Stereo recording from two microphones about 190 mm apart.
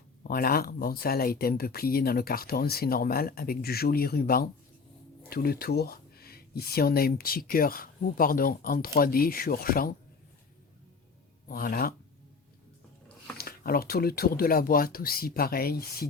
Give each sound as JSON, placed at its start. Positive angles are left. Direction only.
{"t": 0.3, "sound": "speech", "side_deg": 50}
{"t": 11.4, "sound": "speech", "side_deg": 50}
{"t": 13.3, "sound": "speech", "side_deg": 55}